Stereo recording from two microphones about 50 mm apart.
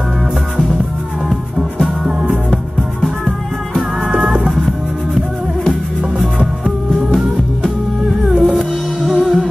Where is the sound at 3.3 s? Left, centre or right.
Centre.